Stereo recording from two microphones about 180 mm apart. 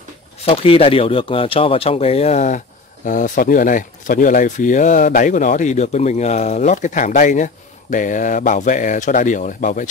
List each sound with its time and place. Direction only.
0.5 s speech: 30° left (ahead or behind)